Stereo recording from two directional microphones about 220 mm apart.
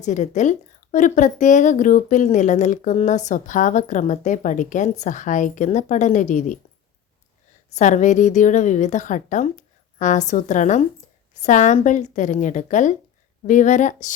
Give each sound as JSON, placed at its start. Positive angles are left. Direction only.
{"t": 0.0, "sound": "a woman's voice", "side_deg": 35}
{"t": 7.7, "sound": "a woman's voice", "side_deg": 35}